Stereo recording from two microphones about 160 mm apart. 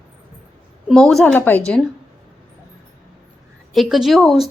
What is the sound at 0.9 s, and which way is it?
Speech, centre (ahead or behind).